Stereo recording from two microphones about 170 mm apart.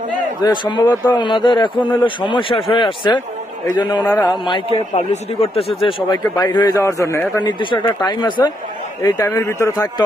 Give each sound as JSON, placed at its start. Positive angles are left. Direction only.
{"t": 0.4, "sound": "speech", "side_deg": 30}
{"t": 4.0, "sound": "speech", "side_deg": 10}
{"t": 4.3, "sound": "speech", "side_deg": 30}
{"t": 7.6, "sound": "speech", "side_deg": 30}